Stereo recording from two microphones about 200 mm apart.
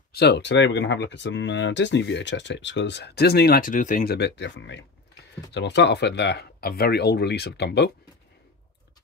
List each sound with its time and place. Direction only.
0.1 s speech: 55° left (ahead or behind)